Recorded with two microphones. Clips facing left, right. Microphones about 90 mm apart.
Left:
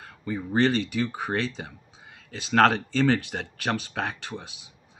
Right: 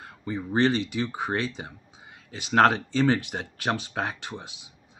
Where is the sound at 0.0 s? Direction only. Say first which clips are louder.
Left 1 dB; 20° right (ahead or behind).